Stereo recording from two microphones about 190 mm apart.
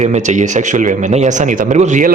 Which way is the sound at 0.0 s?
40° right (ahead or behind).